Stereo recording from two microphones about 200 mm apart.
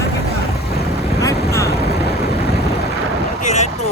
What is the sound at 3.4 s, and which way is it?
Vehicle, 35° left (ahead or behind).